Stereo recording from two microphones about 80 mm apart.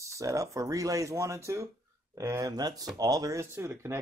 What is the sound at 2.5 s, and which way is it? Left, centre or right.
Speech, right.